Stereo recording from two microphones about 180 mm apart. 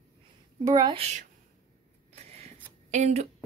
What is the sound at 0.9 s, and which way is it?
Speech, 35° right (ahead or behind).